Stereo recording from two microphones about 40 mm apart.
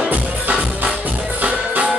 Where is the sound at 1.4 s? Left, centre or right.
Right.